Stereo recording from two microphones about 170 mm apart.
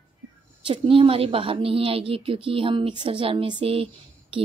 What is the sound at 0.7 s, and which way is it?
A woman's voice, 30° right (ahead or behind).